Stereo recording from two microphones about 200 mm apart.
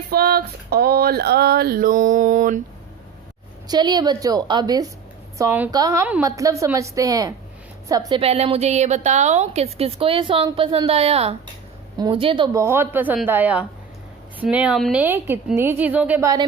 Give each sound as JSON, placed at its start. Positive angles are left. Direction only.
{"t": 0.1, "sound": "a sound", "side_deg": -50}
{"t": 3.7, "sound": "a woman's voice", "side_deg": -20}
{"t": 8.2, "sound": "a woman's voice", "side_deg": -30}
{"t": 12.5, "sound": "a woman's voice", "side_deg": -10}